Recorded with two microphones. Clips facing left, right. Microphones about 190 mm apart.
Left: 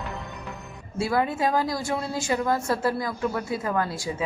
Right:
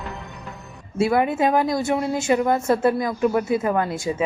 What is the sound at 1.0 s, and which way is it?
A woman's voice, 20° right (ahead or behind).